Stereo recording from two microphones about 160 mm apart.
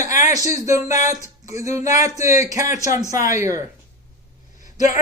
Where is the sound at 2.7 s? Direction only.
50° left (ahead or behind).